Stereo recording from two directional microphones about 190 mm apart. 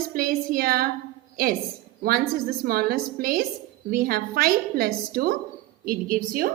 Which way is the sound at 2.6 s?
50° right (ahead or behind).